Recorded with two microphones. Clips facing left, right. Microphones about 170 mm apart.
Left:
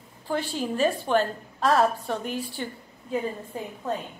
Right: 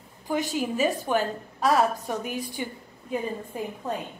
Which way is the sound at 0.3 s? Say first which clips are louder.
Right 1 dB; 15° right (ahead or behind).